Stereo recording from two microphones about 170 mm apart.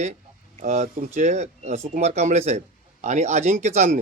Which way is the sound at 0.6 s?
45° right (ahead or behind).